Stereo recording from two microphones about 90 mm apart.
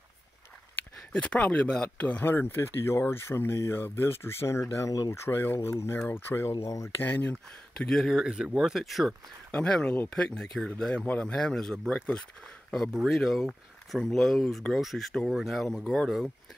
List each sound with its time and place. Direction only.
1.1 s speech: 15° left (ahead or behind); by 6.9 s 35° left (ahead or behind)
7.0 s speech: 20° left (ahead or behind)
7.7 s speech: 5° left (ahead or behind)
9.5 s speech: 10° left (ahead or behind)